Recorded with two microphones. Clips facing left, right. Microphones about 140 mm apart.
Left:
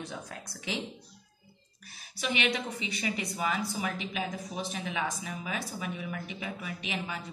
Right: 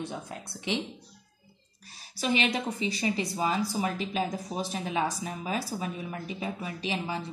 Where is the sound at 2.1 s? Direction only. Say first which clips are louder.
Right 3 dB; 35° right (ahead or behind).